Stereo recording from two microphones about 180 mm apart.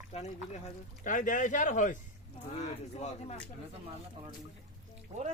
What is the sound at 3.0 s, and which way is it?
Speech, 40° left (ahead or behind).